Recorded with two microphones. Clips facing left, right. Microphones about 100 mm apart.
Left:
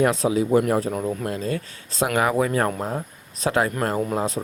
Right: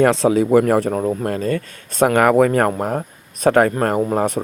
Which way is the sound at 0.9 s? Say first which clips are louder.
Right 6 dB; 45° right (ahead or behind).